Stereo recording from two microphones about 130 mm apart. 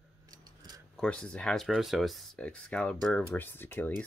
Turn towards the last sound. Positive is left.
turn(degrees=15)  # may be behind; listen again after turning